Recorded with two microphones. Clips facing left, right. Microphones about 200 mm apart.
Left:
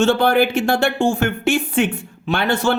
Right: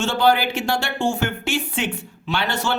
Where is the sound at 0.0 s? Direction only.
55° left (ahead or behind).